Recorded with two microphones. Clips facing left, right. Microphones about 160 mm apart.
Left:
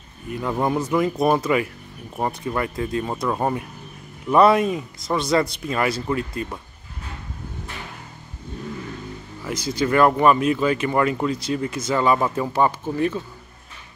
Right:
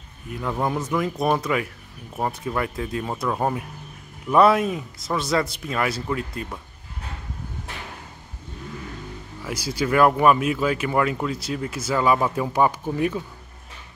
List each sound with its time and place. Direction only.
0.3 s speech: 5° left (ahead or behind)
9.4 s speech: 10° right (ahead or behind)